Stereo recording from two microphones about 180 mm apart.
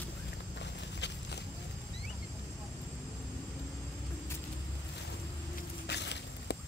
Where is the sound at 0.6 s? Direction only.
75° left (ahead or behind).